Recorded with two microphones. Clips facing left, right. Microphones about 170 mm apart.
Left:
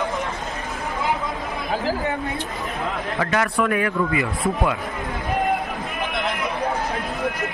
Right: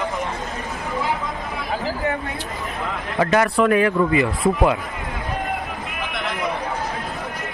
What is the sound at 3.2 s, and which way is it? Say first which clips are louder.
A man's voice: right 5 dB; 25° right (ahead or behind).